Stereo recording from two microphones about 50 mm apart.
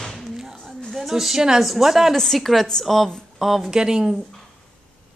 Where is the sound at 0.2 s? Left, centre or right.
Centre.